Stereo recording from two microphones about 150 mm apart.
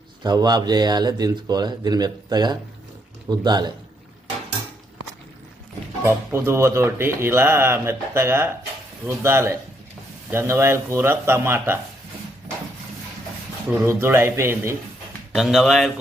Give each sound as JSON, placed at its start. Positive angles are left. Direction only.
{"t": 0.2, "sound": "speech", "side_deg": -25}
{"t": 6.1, "sound": "speech", "side_deg": -15}
{"t": 13.7, "sound": "speech", "side_deg": -15}
{"t": 15.3, "sound": "speech", "side_deg": 0}